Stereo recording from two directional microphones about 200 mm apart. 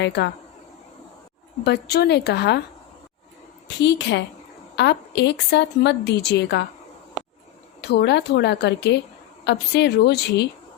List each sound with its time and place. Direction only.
0.0 s a woman's voice: 60° left (ahead or behind)
1.6 s a woman's voice: 55° left (ahead or behind)
3.8 s a woman's voice: 60° left (ahead or behind)
7.8 s a woman's voice: 55° left (ahead or behind)